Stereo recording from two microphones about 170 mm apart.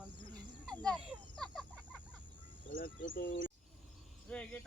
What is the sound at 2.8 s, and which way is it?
Speech, 60° left (ahead or behind).